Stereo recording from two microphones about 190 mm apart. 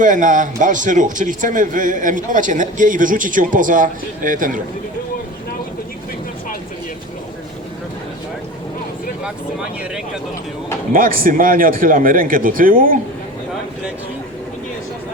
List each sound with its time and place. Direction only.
0.0 s a man's voice: 40° right (ahead or behind)
10.9 s a man's voice: 50° right (ahead or behind)